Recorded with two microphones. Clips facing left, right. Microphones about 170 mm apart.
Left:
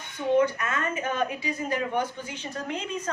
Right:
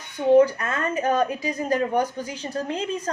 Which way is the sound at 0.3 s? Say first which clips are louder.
Right 5 dB; 35° right (ahead or behind).